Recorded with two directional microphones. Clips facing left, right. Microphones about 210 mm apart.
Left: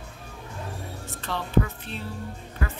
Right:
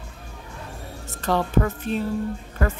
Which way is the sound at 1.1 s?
45° right (ahead or behind).